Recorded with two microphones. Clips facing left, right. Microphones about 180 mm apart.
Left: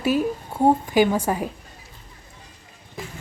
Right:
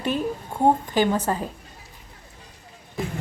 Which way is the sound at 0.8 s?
10° left (ahead or behind).